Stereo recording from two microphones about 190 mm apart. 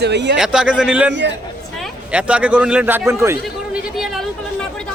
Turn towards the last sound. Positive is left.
turn(degrees=-15)  # may be behind; listen again after turning